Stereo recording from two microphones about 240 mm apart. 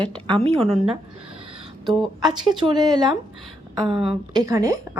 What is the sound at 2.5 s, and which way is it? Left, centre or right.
Speech, centre.